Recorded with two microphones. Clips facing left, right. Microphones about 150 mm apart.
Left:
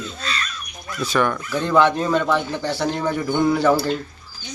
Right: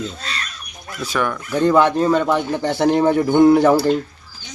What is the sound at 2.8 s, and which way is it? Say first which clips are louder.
Speech: right 11 dB; 55° right (ahead or behind).